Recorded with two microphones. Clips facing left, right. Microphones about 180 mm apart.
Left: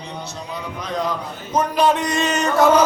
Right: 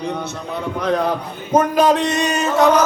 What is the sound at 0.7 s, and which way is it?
A man's voice, 60° right (ahead or behind).